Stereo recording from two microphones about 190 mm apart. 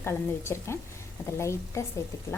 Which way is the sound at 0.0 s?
15° left (ahead or behind).